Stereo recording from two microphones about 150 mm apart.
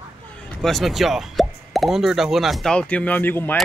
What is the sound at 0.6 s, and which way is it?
Speech, centre (ahead or behind).